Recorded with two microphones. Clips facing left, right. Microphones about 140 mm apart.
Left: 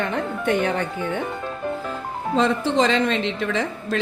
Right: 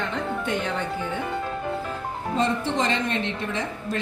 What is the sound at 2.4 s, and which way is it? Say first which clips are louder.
A woman's voice: left 5 dB; 90° left.